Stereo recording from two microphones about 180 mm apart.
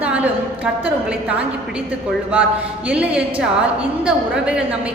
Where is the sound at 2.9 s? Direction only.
5° right (ahead or behind).